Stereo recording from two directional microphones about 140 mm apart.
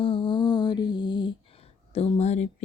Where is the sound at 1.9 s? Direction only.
50° left (ahead or behind).